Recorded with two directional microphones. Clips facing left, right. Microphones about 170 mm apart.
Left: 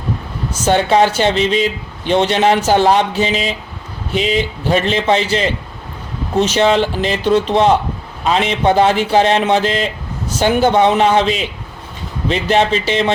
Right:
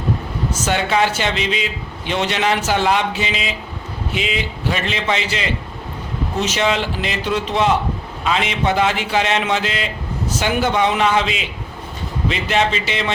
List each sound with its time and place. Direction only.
0.6 s a man's voice: 35° left (ahead or behind)